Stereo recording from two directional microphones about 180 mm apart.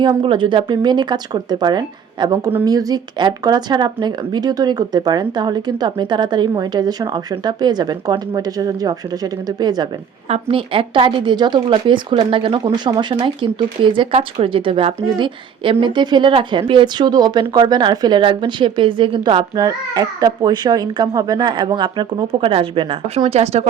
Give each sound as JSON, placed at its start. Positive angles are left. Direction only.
{"t": 0.0, "sound": "speech", "side_deg": -25}